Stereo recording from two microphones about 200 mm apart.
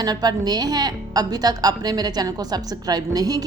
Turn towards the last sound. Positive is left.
turn(degrees=-20)  # may be behind; listen again after turning